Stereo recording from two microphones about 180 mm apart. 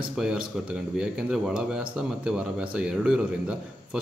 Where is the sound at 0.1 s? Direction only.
5° right (ahead or behind).